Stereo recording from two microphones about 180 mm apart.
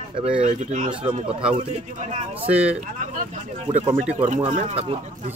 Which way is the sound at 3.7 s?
40° right (ahead or behind).